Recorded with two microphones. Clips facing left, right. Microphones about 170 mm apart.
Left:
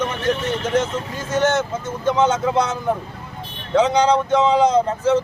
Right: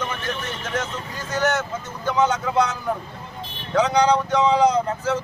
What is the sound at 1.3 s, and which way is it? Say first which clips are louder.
Speech: left 4 dB; 25° left (ahead or behind).